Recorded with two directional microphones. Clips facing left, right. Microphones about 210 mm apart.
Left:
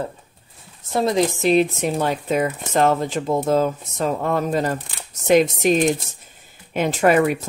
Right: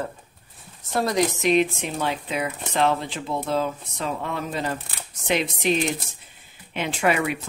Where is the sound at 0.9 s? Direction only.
25° left (ahead or behind).